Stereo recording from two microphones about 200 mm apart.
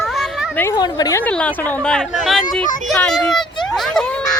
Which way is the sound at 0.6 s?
15° left (ahead or behind).